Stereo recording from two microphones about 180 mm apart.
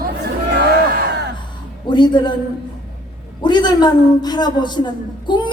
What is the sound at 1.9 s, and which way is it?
Speech, 25° left (ahead or behind).